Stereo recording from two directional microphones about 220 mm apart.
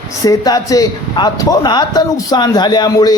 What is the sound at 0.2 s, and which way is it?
A man's voice, 15° left (ahead or behind).